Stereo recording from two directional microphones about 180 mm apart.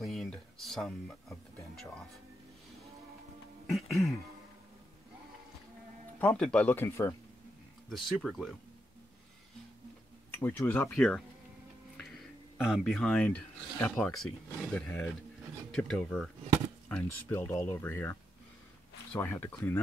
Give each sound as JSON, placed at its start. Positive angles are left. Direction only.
{"t": 0.0, "sound": "a sound", "side_deg": 0}
{"t": 3.7, "sound": "speech", "side_deg": 0}
{"t": 6.1, "sound": "speech", "side_deg": 10}
{"t": 7.9, "sound": "speech", "side_deg": 0}
{"t": 10.4, "sound": "speech", "side_deg": 10}
{"t": 12.6, "sound": "speech", "side_deg": 0}
{"t": 19.1, "sound": "speech", "side_deg": 10}